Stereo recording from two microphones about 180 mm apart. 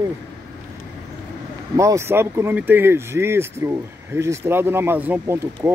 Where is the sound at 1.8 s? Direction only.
15° right (ahead or behind).